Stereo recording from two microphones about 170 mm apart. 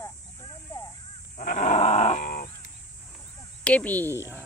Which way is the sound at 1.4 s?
45° left (ahead or behind).